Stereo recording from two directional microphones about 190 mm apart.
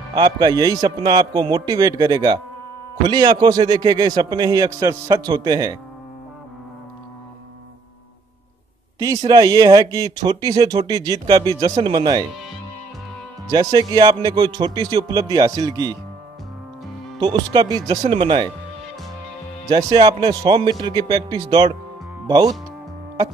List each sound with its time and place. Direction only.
0.1 s speech: 20° right (ahead or behind)
8.9 s speech: 20° right (ahead or behind)
13.5 s speech: 20° right (ahead or behind)
17.2 s speech: 20° right (ahead or behind)
19.9 s speech: 20° right (ahead or behind)